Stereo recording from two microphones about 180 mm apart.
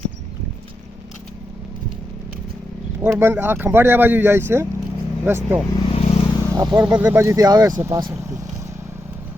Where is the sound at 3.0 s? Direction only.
10° right (ahead or behind).